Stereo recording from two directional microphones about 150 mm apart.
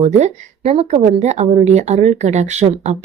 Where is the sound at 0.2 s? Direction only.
45° right (ahead or behind).